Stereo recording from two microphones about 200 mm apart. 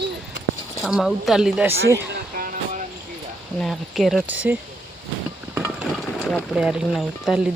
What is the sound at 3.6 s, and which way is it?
Speech, centre (ahead or behind).